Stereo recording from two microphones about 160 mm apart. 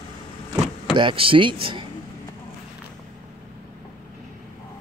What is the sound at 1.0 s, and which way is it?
Speech, 30° right (ahead or behind).